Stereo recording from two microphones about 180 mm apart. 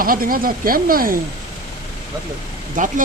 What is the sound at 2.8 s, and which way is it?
Speech, 45° right (ahead or behind).